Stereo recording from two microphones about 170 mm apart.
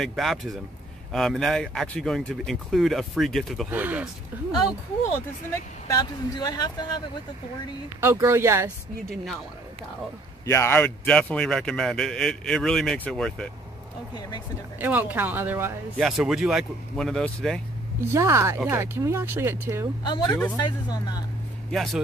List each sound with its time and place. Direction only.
0.0 s a man's voice: centre (ahead or behind)
3.7 s speech: 10° right (ahead or behind)
5.5 s speech: 20° left (ahead or behind)
8.0 s speech: 15° right (ahead or behind)
10.4 s a man's voice: 15° left (ahead or behind)
14.8 s speech: 10° right (ahead or behind)
16.0 s a man's voice: centre (ahead or behind)
18.0 s speech: 15° right (ahead or behind)
20.0 s speech: 25° left (ahead or behind)
21.6 s a man's voice: centre (ahead or behind)